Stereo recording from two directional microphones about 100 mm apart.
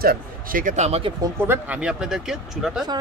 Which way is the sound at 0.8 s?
90° right.